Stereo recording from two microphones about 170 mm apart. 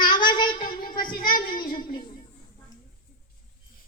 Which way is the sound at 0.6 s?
55° left (ahead or behind).